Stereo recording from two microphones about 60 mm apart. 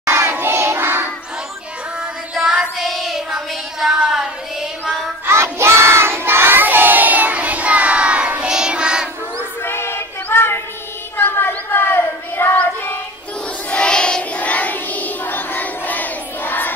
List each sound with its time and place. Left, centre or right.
0.0 s child singing: right
2.3 s music: centre
2.9 s child singing: centre
5.2 s child singing: right; by 9.1 s centre
9.6 s a sound: left
13.7 s child singing: centre; by 16.7 s left